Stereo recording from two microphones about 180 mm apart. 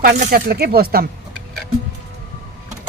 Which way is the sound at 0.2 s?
50° right (ahead or behind).